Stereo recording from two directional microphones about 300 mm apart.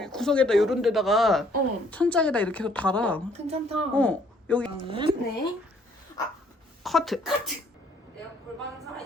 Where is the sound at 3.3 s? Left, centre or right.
Right.